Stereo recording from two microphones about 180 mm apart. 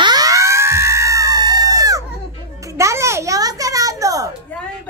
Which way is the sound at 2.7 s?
15° right (ahead or behind).